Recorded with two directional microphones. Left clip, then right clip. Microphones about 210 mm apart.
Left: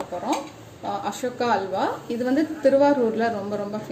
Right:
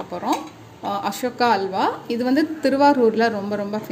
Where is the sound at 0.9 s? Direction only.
45° right (ahead or behind).